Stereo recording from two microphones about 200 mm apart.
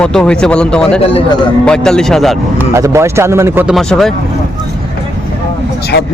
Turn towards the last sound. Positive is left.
turn(degrees=60)  # may be behind; listen again after turning